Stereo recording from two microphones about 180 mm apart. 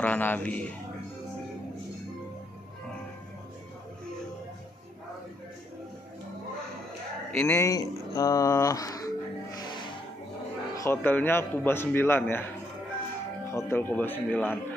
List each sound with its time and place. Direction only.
0.0 s a man's voice: 10° left (ahead or behind)
7.2 s a sound: 10° left (ahead or behind)
10.7 s a man's voice: 15° left (ahead or behind)
13.5 s a man's voice: 15° left (ahead or behind)